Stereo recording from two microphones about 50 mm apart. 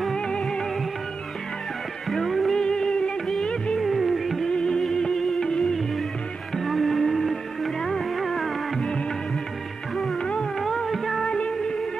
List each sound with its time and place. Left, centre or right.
0.1 s music: centre
2.0 s music: centre
2.6 s music: centre
3.8 s music: centre
4.5 s music: centre
10.6 s music: centre
11.2 s music: left